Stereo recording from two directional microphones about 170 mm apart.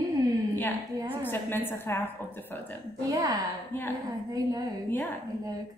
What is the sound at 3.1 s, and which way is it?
A woman's voice, 20° right (ahead or behind).